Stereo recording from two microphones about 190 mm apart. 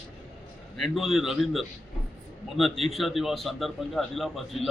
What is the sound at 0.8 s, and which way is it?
A man's voice, centre (ahead or behind).